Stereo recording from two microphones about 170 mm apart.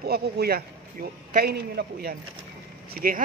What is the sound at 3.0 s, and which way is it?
Speech, 55° right (ahead or behind).